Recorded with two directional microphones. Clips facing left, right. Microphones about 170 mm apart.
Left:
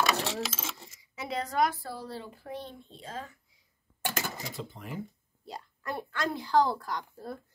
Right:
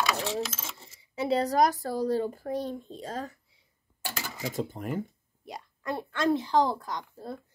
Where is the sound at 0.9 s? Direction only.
30° right (ahead or behind).